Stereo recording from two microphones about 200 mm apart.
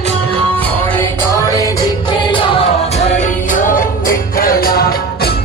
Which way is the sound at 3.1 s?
40° left (ahead or behind).